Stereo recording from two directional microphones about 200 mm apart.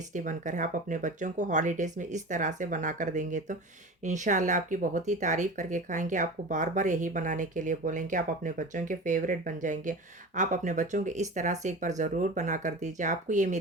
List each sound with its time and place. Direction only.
0.1 s speech: 40° right (ahead or behind)